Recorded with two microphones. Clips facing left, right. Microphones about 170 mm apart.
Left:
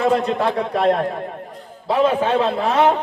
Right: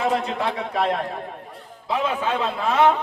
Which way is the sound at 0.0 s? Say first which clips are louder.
Left 5 dB; 50° left (ahead or behind).